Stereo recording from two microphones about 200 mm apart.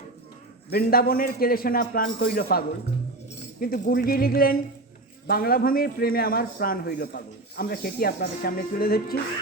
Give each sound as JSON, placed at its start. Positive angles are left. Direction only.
{"t": 0.7, "sound": "a man's voice", "side_deg": 50}